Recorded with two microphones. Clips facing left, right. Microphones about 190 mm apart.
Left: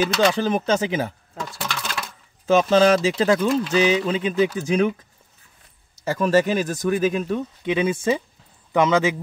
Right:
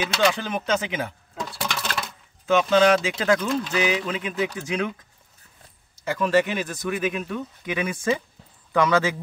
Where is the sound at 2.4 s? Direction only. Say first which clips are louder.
Left 2 dB; 35° left (ahead or behind).